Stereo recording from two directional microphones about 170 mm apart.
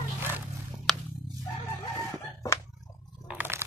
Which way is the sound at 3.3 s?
10° right (ahead or behind).